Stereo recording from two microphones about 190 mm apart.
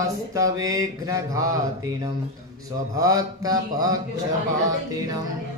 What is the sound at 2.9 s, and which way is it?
Mantra, 20° right (ahead or behind).